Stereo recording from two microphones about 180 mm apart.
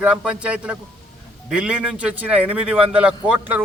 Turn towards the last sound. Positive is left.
turn(degrees=-5)  # may be behind; listen again after turning